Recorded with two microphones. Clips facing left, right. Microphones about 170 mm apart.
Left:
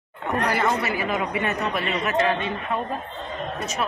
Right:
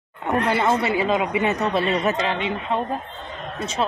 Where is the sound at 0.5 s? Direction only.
25° right (ahead or behind).